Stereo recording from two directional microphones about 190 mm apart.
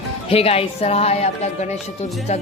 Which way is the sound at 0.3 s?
30° left (ahead or behind).